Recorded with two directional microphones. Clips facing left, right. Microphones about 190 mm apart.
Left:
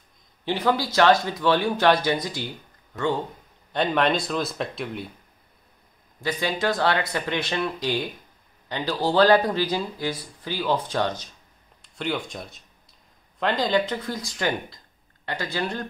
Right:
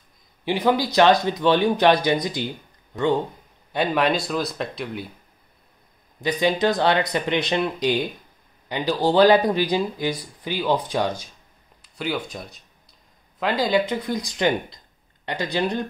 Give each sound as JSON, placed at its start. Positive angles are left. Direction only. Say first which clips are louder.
{"t": 0.5, "sound": "speech", "louder": "right 3 dB", "side_deg": -15}
{"t": 3.7, "sound": "speech", "louder": "right 1 dB", "side_deg": -5}
{"t": 6.2, "sound": "speech", "louder": "right 5 dB", "side_deg": -20}